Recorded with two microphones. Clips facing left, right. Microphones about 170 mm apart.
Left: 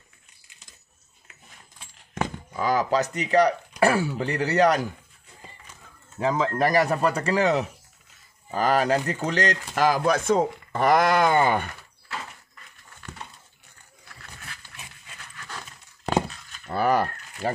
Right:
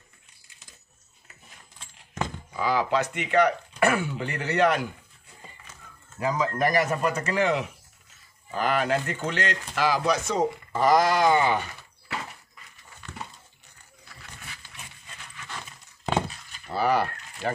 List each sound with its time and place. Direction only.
1.8 s a sound: 10° left (ahead or behind)
2.6 s speech: 45° left (ahead or behind)
6.1 s speech: 30° left (ahead or behind); by 11.7 s 50° left (ahead or behind)
16.7 s speech: 50° left (ahead or behind)